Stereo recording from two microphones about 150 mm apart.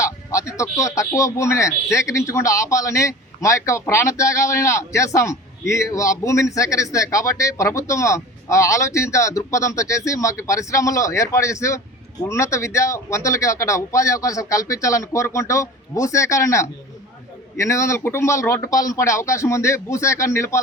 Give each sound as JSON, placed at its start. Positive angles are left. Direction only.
{"t": 0.0, "sound": "a man's voice", "side_deg": 20}